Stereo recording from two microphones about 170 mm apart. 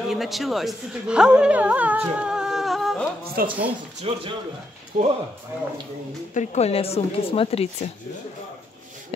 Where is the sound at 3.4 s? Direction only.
60° right (ahead or behind).